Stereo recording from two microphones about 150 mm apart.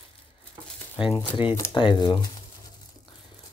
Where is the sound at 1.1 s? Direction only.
35° left (ahead or behind).